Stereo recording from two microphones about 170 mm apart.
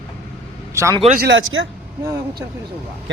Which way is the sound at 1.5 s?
90° right.